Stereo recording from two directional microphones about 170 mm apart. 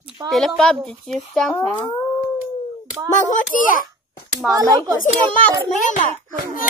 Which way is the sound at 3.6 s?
55° left (ahead or behind).